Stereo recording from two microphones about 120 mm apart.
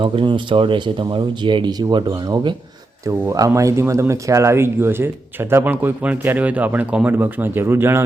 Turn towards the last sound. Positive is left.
turn(degrees=-20)  # may be behind; listen again after turning